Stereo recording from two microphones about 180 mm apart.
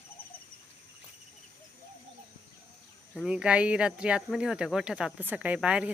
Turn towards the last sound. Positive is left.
turn(degrees=-5)  # may be behind; listen again after turning